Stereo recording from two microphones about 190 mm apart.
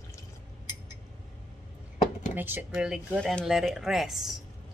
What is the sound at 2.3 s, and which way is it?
Speech, 10° right (ahead or behind).